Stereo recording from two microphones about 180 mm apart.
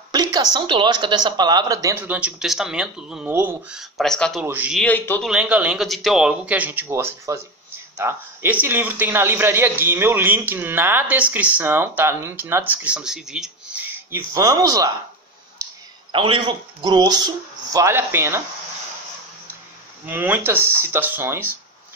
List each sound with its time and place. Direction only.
0.1 s a man's voice: 25° right (ahead or behind); by 4.5 s centre (ahead or behind)
4.5 s a man's voice: 10° right (ahead or behind)
4.7 s a man's voice: 10° left (ahead or behind)
5.3 s a man's voice: 5° right (ahead or behind)
16.1 s a man's voice: 25° right (ahead or behind)
20.1 s a man's voice: 10° right (ahead or behind)